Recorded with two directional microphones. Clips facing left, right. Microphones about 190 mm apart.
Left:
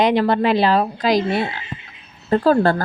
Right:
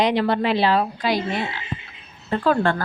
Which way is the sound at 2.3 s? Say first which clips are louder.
Left 5 dB; 40° left (ahead or behind).